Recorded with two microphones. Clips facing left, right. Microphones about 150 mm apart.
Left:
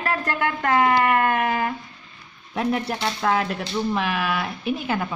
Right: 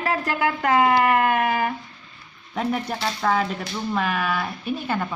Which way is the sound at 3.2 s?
5° left (ahead or behind).